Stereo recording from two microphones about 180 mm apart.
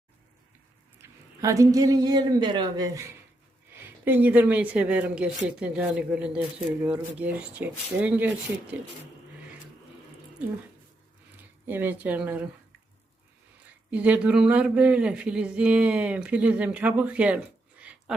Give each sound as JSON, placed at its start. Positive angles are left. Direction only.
{"t": 1.4, "sound": "speech", "side_deg": -20}
{"t": 11.6, "sound": "speech", "side_deg": -10}
{"t": 13.9, "sound": "speech", "side_deg": -5}